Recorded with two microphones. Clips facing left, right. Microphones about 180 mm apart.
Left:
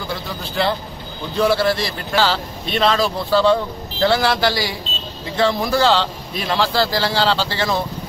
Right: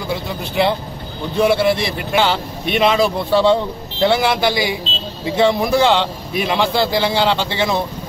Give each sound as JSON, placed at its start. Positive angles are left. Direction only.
{"t": 0.1, "sound": "a man's voice", "side_deg": -20}